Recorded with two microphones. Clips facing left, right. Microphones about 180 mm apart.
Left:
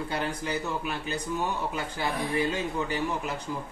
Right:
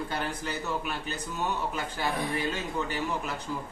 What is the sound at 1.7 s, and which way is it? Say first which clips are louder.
Speech: even; 15° left (ahead or behind).